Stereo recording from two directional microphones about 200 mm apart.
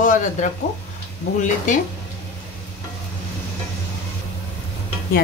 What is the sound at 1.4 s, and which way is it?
Speech, 40° left (ahead or behind).